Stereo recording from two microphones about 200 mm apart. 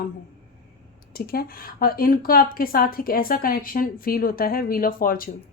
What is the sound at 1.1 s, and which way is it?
A woman's voice, 50° left (ahead or behind).